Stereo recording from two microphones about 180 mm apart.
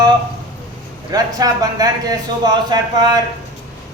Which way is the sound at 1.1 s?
20° right (ahead or behind).